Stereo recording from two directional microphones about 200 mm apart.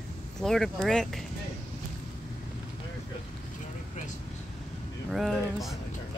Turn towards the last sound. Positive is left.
turn(degrees=0)  # may be behind; listen again after turning